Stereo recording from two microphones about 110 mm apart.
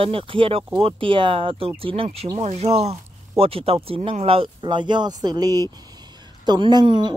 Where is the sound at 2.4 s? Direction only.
80° right.